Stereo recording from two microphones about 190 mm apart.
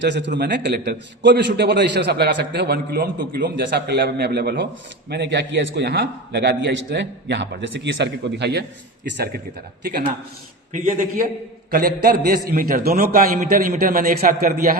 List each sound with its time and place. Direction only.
0.0 s a man's voice: 65° right (ahead or behind)
10.7 s a man's voice: 45° right (ahead or behind)